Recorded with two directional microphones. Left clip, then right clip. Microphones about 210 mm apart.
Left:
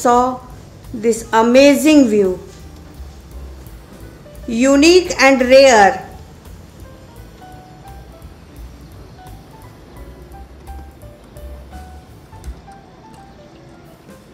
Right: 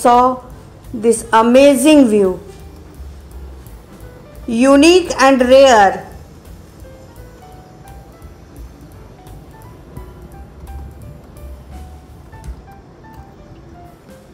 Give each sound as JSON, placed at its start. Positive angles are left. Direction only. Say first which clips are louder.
{"t": 0.0, "sound": "a woman's voice", "louder": "right 3 dB", "side_deg": -10}
{"t": 4.5, "sound": "a woman's voice", "louder": "right 2 dB", "side_deg": -5}